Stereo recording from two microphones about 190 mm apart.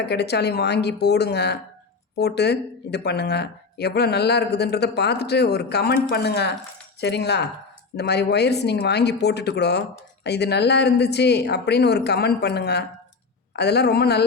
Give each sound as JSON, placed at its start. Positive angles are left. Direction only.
{"t": 0.0, "sound": "speech", "side_deg": 60}